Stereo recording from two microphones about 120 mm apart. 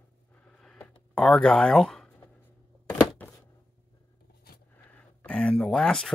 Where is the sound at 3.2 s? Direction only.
15° left (ahead or behind).